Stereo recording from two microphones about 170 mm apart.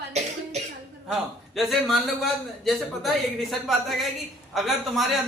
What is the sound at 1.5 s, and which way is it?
A woman's voice, centre (ahead or behind).